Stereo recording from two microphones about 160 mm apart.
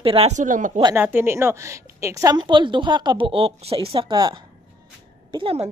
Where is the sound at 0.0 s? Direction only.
35° right (ahead or behind).